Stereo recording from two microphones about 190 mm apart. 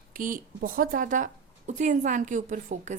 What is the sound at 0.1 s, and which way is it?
A woman's voice, 45° right (ahead or behind).